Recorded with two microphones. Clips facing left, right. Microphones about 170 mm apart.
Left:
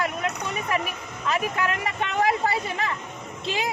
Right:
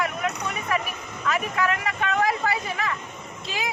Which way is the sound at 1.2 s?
25° left (ahead or behind).